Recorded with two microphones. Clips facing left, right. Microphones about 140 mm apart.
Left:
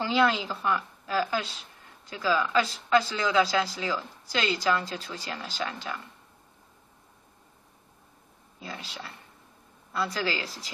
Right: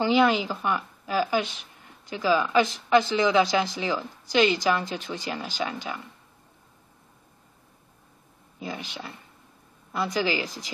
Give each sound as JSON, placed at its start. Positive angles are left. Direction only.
{"t": 0.0, "sound": "a woman's voice", "side_deg": -15}
{"t": 8.5, "sound": "a woman's voice", "side_deg": -15}